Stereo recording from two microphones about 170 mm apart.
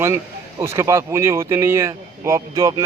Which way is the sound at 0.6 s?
15° right (ahead or behind).